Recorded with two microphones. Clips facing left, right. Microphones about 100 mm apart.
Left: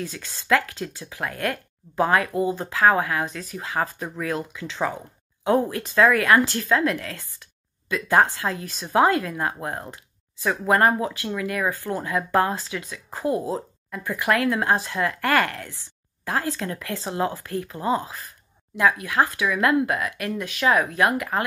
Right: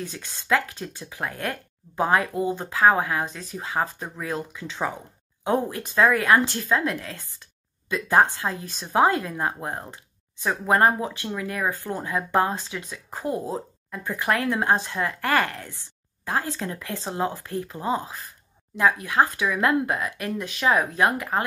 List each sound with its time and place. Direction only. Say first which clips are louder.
0.0 s speech: left 2 dB; 20° right (ahead or behind)
18.8 s speech: even; 35° right (ahead or behind)